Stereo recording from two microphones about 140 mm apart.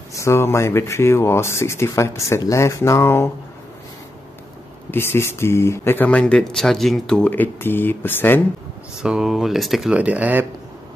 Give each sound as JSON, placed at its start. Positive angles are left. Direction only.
{"t": 0.1, "sound": "speech", "side_deg": 20}
{"t": 4.9, "sound": "speech", "side_deg": 15}
{"t": 9.0, "sound": "speech", "side_deg": -5}